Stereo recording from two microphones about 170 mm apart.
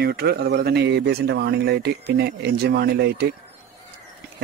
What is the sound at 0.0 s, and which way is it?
Speech, 65° right (ahead or behind).